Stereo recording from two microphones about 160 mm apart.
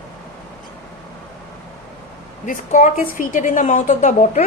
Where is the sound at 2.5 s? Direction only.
55° left (ahead or behind).